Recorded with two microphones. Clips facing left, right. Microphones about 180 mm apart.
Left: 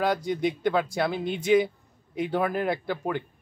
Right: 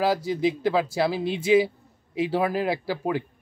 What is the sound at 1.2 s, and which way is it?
Speech, 30° right (ahead or behind).